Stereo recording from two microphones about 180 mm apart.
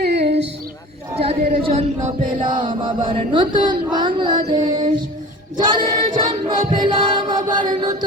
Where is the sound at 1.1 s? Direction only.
35° right (ahead or behind).